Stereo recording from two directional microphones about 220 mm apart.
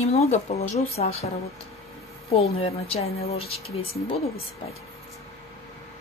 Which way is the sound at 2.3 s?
25° left (ahead or behind).